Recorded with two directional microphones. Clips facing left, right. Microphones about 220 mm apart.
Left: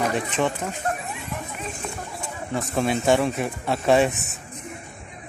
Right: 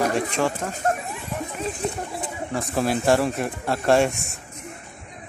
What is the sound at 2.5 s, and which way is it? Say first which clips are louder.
Speech: even; centre (ahead or behind).